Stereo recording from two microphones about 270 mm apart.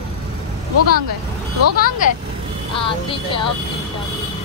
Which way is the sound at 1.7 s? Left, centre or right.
Left.